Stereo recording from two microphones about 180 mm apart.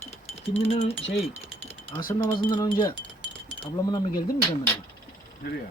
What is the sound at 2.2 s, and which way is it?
Wind chime, 25° left (ahead or behind).